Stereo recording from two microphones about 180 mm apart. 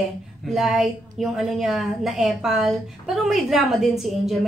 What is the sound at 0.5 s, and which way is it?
A woman's voice, centre (ahead or behind).